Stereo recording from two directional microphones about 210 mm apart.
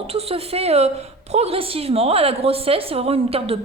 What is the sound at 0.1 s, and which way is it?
A woman's voice, 30° right (ahead or behind).